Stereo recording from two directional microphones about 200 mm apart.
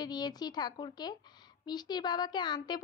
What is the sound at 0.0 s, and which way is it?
A woman's voice, 20° left (ahead or behind).